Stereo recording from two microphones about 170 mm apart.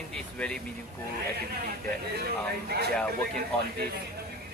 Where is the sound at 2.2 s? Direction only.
70° right (ahead or behind).